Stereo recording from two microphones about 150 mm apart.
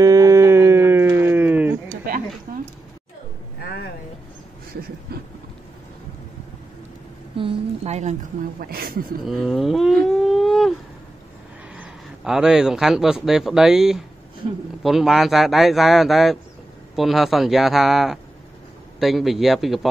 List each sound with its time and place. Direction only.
0.0 s sheep: 20° right (ahead or behind)
5.1 s vehicle: 90° right
7.3 s a woman's voice: 40° right (ahead or behind)
8.5 s a woman's voice: 80° right
9.2 s speech: centre (ahead or behind)
10.2 s a sound: centre (ahead or behind)
11.7 s a man's voice: 5° right (ahead or behind)